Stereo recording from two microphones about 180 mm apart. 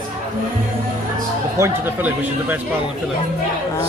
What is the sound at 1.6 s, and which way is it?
A woman's voice, 10° right (ahead or behind).